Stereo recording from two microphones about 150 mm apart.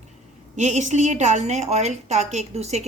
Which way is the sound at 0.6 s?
50° right (ahead or behind).